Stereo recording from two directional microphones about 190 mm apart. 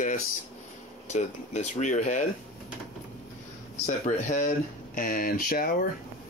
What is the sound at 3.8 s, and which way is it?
Speech, 40° left (ahead or behind).